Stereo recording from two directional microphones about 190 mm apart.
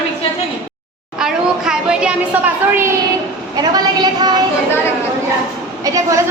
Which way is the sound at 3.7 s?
20° right (ahead or behind).